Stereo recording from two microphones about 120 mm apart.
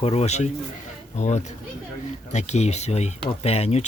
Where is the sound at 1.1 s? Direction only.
75° left (ahead or behind).